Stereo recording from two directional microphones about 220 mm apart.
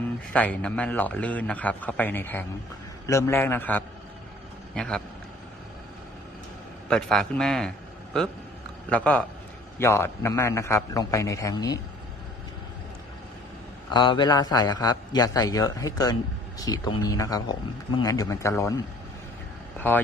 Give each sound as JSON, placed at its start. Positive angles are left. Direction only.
{"t": 0.3, "sound": "a man's voice", "side_deg": 5}
{"t": 6.8, "sound": "a man's voice", "side_deg": 5}
{"t": 8.9, "sound": "a man's voice", "side_deg": 5}
{"t": 13.9, "sound": "a man's voice", "side_deg": 20}